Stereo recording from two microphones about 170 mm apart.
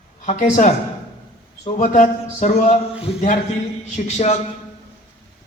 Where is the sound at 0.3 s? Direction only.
45° left (ahead or behind).